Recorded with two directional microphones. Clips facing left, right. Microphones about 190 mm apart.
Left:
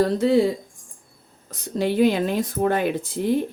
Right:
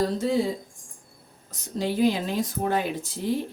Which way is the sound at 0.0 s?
65° left (ahead or behind).